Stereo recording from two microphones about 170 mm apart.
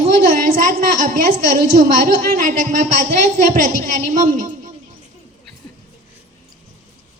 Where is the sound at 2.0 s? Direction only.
55° right (ahead or behind).